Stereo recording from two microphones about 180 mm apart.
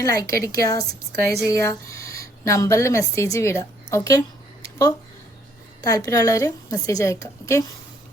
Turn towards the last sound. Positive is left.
turn(degrees=15)  # may be behind; listen again after turning